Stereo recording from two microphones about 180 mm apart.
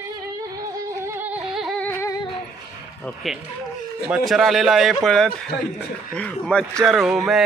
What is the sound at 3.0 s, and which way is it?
A man's voice, centre (ahead or behind).